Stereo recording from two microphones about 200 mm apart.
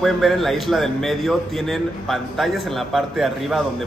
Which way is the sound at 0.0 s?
Centre (ahead or behind).